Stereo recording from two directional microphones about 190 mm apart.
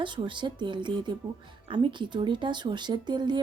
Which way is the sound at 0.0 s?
25° right (ahead or behind).